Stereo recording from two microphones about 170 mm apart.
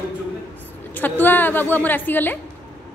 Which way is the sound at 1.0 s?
10° left (ahead or behind).